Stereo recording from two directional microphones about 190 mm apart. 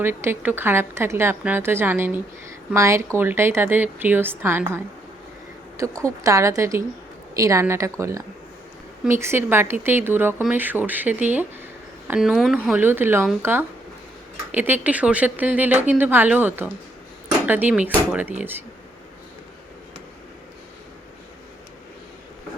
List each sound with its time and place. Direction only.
0.0 s speech: 10° right (ahead or behind)
6.0 s speech: 15° right (ahead or behind)